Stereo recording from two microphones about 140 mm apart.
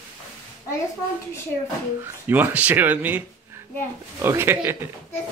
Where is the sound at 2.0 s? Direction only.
15° right (ahead or behind).